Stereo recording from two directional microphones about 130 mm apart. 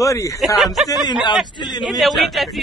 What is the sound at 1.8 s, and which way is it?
Speech, centre (ahead or behind).